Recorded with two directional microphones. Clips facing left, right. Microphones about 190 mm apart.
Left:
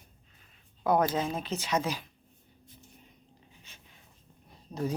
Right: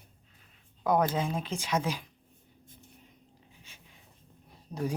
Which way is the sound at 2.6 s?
50° right (ahead or behind).